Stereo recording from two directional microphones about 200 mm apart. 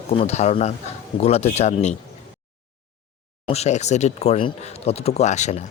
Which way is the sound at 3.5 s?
35° left (ahead or behind).